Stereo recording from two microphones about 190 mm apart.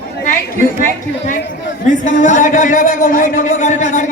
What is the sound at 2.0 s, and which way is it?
A man's voice, 40° left (ahead or behind).